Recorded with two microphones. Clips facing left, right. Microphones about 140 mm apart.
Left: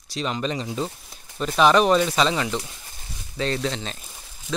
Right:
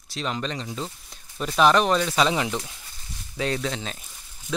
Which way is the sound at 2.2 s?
10° right (ahead or behind).